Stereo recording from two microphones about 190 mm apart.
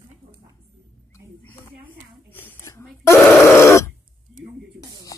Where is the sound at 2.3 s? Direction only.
10° left (ahead or behind).